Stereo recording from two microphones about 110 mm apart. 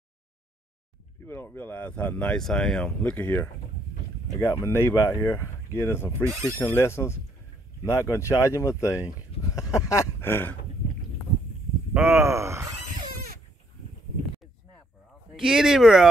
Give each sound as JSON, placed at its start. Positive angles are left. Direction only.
{"t": 1.2, "sound": "speech", "side_deg": 20}
{"t": 3.0, "sound": "speech", "side_deg": 15}
{"t": 6.2, "sound": "speech", "side_deg": -25}
{"t": 6.6, "sound": "speech", "side_deg": 20}
{"t": 9.6, "sound": "a sound", "side_deg": 30}
{"t": 11.9, "sound": "speech", "side_deg": -20}
{"t": 15.3, "sound": "speech", "side_deg": -5}